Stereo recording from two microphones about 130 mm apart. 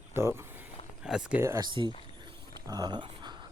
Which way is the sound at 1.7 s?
40° right (ahead or behind).